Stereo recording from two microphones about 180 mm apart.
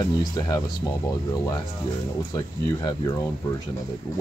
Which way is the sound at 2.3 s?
20° left (ahead or behind).